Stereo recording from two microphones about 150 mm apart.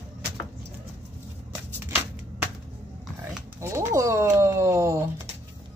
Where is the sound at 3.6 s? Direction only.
20° right (ahead or behind).